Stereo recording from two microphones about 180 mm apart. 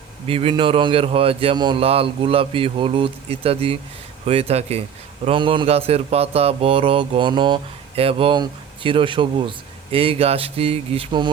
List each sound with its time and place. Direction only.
0.3 s speech: 30° right (ahead or behind)